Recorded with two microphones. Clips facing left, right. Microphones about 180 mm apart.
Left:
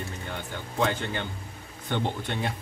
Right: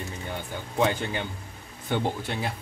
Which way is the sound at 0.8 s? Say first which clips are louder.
Right 2 dB; 15° right (ahead or behind).